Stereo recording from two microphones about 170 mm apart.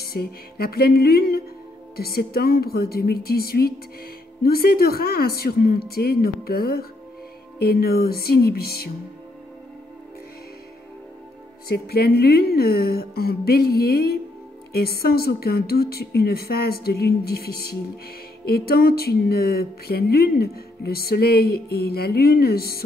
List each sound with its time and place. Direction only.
0.0 s speech: 65° left (ahead or behind)
11.7 s speech: 65° left (ahead or behind)